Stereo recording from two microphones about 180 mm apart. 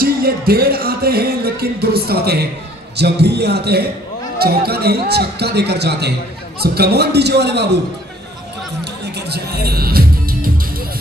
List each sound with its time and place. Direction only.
0.0 s a man's voice: 55° right (ahead or behind)
9.0 s music: 65° right (ahead or behind)